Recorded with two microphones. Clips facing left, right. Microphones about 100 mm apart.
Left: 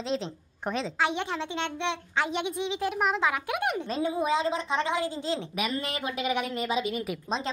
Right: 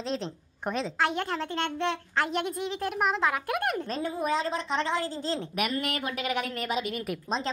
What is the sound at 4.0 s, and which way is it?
A woman's voice, 15° left (ahead or behind).